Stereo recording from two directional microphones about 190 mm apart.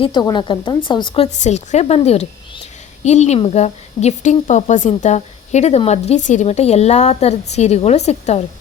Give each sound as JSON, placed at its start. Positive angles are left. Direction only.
{"t": 0.0, "sound": "a woman's voice", "side_deg": 20}